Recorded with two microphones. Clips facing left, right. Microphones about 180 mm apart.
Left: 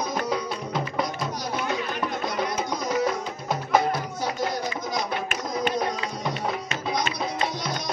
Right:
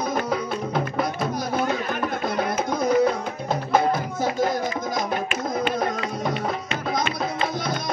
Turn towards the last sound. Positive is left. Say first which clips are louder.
# right 3 dB
turn(degrees=-50)  # may be behind; listen again after turning